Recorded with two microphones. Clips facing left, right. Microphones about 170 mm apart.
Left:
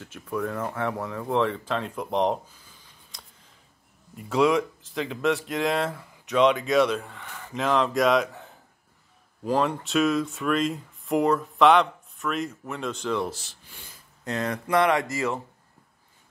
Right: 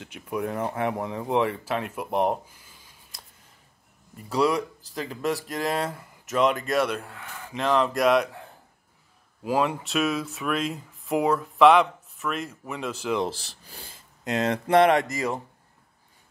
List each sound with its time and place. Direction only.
0.0 s speech: 15° right (ahead or behind)
4.2 s speech: centre (ahead or behind)
13.3 s speech: 35° right (ahead or behind)
13.9 s speech: 20° right (ahead or behind)